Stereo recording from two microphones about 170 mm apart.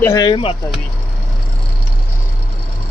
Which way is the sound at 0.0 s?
20° left (ahead or behind).